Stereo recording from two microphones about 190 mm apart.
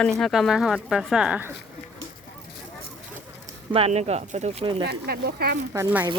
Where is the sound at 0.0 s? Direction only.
5° left (ahead or behind).